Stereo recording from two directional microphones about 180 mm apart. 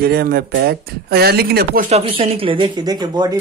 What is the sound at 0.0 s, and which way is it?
Speech, 60° right (ahead or behind).